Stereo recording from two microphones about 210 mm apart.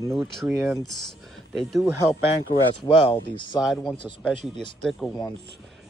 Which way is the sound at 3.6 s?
Centre (ahead or behind).